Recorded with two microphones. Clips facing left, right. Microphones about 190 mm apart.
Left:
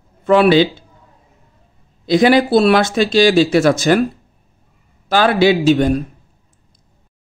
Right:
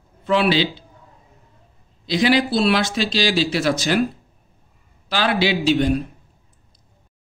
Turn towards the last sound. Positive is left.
turn(degrees=50)  # may be behind; listen again after turning